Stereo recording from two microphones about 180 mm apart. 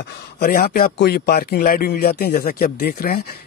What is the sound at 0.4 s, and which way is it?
Speech, 55° left (ahead or behind).